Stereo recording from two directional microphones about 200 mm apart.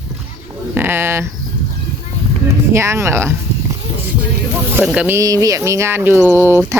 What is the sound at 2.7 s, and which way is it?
Speech, 15° right (ahead or behind).